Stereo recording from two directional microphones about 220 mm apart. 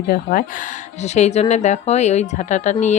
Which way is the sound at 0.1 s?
40° left (ahead or behind).